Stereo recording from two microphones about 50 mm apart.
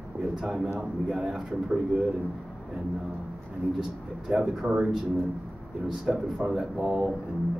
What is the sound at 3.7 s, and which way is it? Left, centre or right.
Speech, centre.